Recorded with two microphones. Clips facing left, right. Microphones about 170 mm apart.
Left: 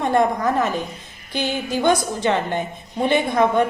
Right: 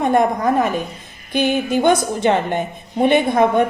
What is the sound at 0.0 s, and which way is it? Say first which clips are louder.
A woman's voice: right 3 dB; 20° right (ahead or behind).